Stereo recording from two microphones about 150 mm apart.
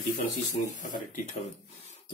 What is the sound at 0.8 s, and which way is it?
Speech, 60° left (ahead or behind).